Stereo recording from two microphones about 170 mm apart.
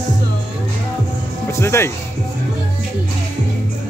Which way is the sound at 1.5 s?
15° left (ahead or behind).